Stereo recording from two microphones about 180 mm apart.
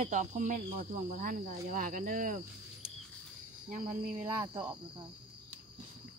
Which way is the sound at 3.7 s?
45° right (ahead or behind).